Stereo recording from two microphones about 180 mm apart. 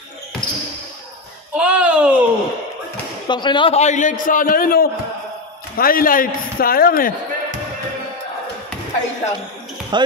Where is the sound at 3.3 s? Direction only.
25° left (ahead or behind); by 7.2 s 55° left (ahead or behind).